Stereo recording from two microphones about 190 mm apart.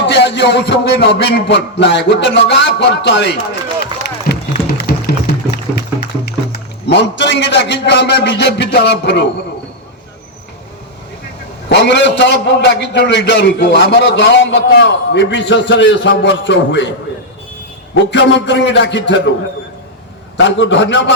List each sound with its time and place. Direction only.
0.0 s a man's voice: 65° left (ahead or behind)
4.3 s run: 50° left (ahead or behind)
4.9 s a sound: 55° left (ahead or behind)
6.2 s a man's voice: 60° left (ahead or behind)
11.7 s a man's voice: 70° left (ahead or behind)
17.9 s a man's voice: 70° left (ahead or behind)
20.3 s a man's voice: 70° left (ahead or behind)